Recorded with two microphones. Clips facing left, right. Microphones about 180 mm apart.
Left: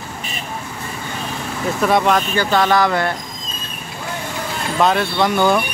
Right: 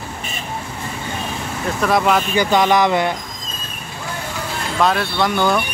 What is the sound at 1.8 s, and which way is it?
Speech, centre (ahead or behind).